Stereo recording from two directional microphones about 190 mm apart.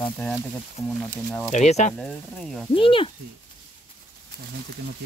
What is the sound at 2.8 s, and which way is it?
Speech, 30° left (ahead or behind).